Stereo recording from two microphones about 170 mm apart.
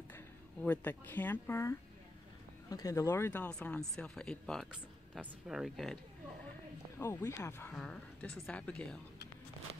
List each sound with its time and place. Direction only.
0.1 s speech: 10° left (ahead or behind)
7.0 s speech: 15° left (ahead or behind)